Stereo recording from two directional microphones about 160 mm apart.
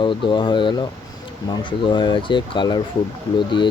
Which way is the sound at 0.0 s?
30° left (ahead or behind).